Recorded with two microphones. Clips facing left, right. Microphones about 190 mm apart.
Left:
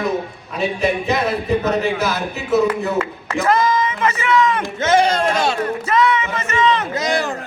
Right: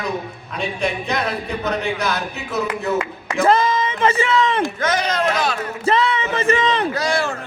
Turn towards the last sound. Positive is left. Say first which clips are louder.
# left 1 dB
turn(degrees=20)  # may be behind; listen again after turning